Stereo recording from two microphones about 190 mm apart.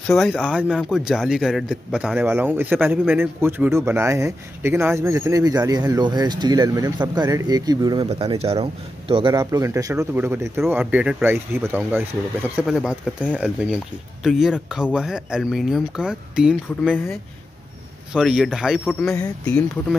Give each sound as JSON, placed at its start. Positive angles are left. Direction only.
{"t": 0.0, "sound": "speech", "side_deg": 0}
{"t": 18.1, "sound": "speech", "side_deg": 0}
{"t": 19.0, "sound": "speech", "side_deg": 15}
{"t": 19.4, "sound": "speech", "side_deg": 5}